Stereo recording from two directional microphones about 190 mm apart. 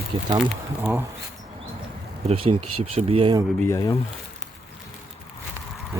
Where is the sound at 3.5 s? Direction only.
15° left (ahead or behind).